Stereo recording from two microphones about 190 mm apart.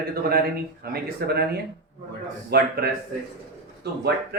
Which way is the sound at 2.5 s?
55° right (ahead or behind).